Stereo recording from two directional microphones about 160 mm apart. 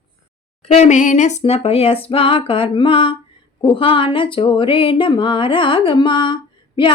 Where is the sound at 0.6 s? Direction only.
45° left (ahead or behind); by 6.9 s 30° left (ahead or behind).